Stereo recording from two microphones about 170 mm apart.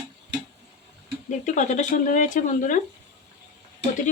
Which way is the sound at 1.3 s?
45° left (ahead or behind).